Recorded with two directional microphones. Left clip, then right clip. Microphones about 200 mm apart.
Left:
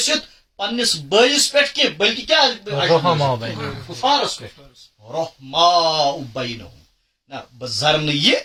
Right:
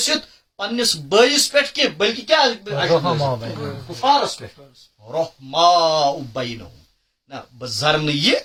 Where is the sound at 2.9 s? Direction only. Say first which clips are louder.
Left 3 dB; 40° left (ahead or behind).